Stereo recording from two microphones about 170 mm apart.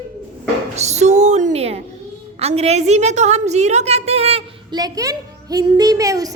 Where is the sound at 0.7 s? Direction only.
40° right (ahead or behind).